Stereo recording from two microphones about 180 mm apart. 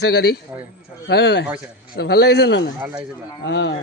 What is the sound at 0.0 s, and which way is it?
A man's voice, 65° left (ahead or behind).